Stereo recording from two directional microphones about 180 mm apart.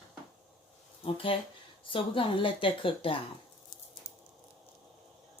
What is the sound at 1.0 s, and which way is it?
Speech, 30° left (ahead or behind).